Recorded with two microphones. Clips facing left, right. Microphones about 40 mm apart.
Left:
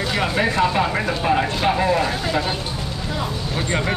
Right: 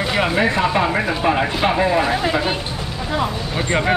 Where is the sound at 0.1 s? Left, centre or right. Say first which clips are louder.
Right 3 dB; centre.